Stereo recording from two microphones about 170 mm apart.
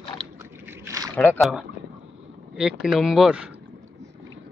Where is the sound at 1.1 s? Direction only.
10° left (ahead or behind).